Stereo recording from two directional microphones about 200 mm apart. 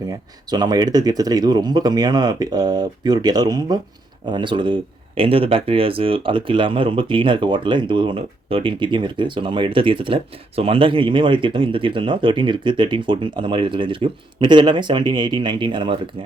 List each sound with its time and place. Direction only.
0.5 s speech: 20° right (ahead or behind)